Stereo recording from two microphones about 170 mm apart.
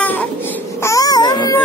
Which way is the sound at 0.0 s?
10° left (ahead or behind).